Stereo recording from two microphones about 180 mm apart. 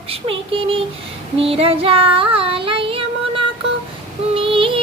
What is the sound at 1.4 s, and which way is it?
Child singing, 35° right (ahead or behind).